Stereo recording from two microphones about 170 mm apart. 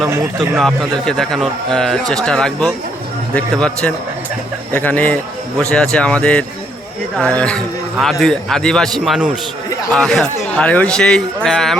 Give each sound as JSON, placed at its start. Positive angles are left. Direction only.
{"t": 0.0, "sound": "speech", "side_deg": -20}
{"t": 0.5, "sound": "a man's voice", "side_deg": 0}